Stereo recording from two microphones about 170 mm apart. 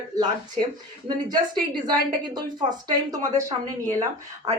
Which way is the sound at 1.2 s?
25° right (ahead or behind).